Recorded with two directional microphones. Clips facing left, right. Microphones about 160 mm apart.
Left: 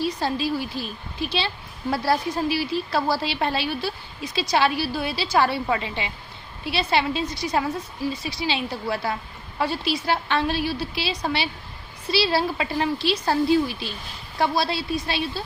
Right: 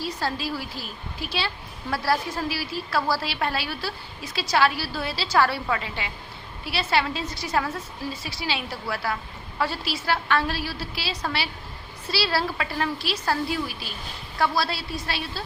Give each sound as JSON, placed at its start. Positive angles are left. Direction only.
{"t": 0.0, "sound": "a woman's voice", "side_deg": 20}